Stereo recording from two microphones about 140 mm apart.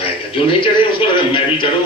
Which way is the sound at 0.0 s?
40° left (ahead or behind).